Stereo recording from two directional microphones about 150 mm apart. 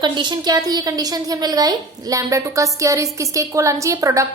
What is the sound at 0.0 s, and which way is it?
A woman's voice, 30° right (ahead or behind).